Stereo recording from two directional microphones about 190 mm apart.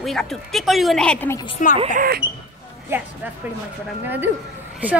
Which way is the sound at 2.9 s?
10° right (ahead or behind).